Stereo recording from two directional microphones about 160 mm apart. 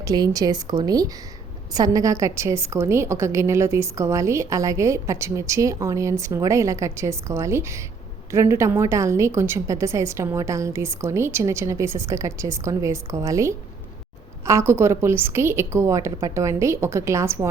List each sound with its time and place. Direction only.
0.0 s a woman's voice: 25° right (ahead or behind)